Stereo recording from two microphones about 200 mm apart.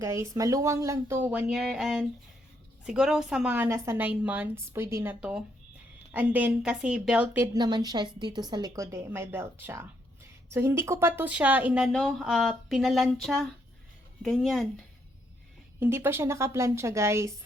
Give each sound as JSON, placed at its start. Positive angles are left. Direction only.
{"t": 0.0, "sound": "a woman's voice", "side_deg": -15}
{"t": 15.8, "sound": "a woman's voice", "side_deg": -10}